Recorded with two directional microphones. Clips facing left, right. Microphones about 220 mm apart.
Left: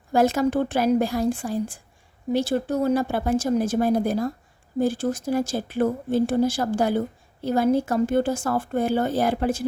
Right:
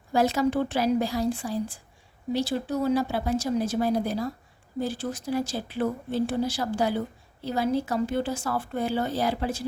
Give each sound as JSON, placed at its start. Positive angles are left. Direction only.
{"t": 0.1, "sound": "speech", "side_deg": 50}